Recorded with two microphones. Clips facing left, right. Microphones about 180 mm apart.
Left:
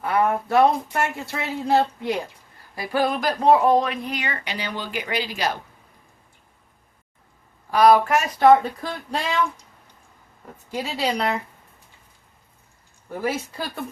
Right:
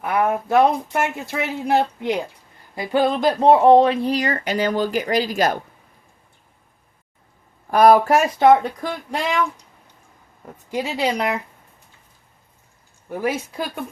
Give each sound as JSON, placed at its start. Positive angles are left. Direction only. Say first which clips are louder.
{"t": 0.0, "sound": "speech", "louder": "right 1 dB", "side_deg": -15}
{"t": 7.7, "sound": "speech", "louder": "right 3 dB", "side_deg": -45}
{"t": 8.4, "sound": "speech", "louder": "left 2 dB", "side_deg": -20}
{"t": 10.7, "sound": "speech", "louder": "right 3 dB", "side_deg": -20}
{"t": 13.1, "sound": "speech", "louder": "right 2 dB", "side_deg": -15}